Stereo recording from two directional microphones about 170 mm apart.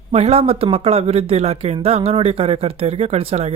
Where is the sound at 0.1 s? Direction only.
35° right (ahead or behind).